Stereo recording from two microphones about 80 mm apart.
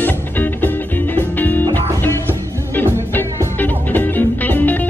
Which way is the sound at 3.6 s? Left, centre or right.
Left.